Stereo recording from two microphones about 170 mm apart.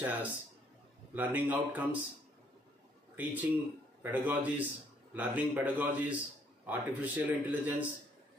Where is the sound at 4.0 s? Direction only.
10° right (ahead or behind).